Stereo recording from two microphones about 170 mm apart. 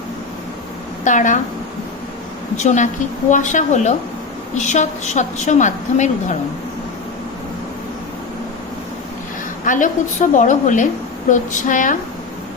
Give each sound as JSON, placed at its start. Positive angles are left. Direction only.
{"t": 1.0, "sound": "a woman's voice", "side_deg": 50}
{"t": 2.6, "sound": "a woman's voice", "side_deg": 45}
{"t": 9.6, "sound": "a woman's voice", "side_deg": 50}